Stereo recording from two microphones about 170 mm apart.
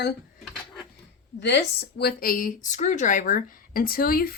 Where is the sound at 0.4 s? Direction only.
Centre (ahead or behind).